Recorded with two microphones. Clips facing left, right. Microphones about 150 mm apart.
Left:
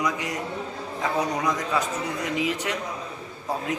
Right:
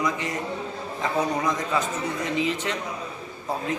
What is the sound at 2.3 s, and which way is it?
Speech, 10° left (ahead or behind).